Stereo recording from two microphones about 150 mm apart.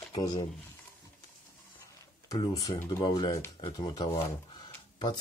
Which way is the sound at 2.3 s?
35° left (ahead or behind).